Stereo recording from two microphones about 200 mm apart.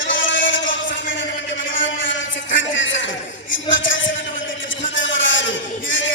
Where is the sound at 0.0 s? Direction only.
70° left (ahead or behind).